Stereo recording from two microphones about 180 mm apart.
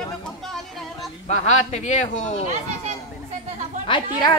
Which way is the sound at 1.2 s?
40° left (ahead or behind).